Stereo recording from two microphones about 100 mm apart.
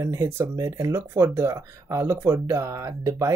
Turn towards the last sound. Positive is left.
turn(degrees=-30)  # may be behind; listen again after turning